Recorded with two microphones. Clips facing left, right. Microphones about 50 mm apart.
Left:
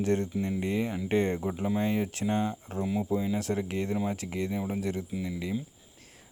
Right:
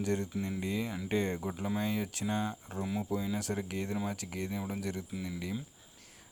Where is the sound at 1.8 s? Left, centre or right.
Left.